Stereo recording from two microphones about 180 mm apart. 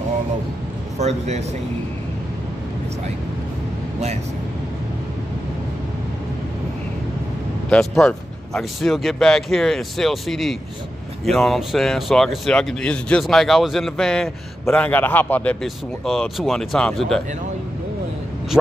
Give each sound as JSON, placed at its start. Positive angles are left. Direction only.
{"t": 0.9, "sound": "speech", "side_deg": -40}
{"t": 7.7, "sound": "speech", "side_deg": 5}